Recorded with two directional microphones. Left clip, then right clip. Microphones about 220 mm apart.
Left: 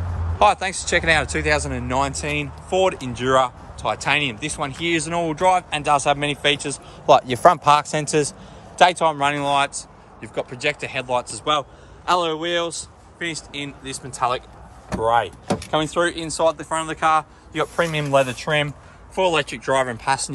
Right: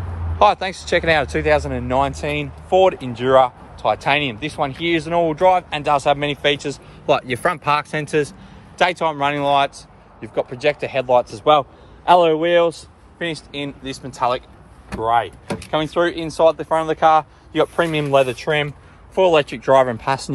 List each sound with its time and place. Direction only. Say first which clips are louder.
0.4 s speech: right 2 dB; 10° left (ahead or behind)
11.3 s a man's voice: right 7 dB; 10° right (ahead or behind)
14.0 s speech: right 2 dB; 10° left (ahead or behind)
19.1 s speech: right 5 dB; centre (ahead or behind)